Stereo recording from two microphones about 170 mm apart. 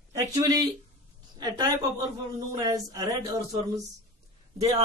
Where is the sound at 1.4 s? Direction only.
25° right (ahead or behind).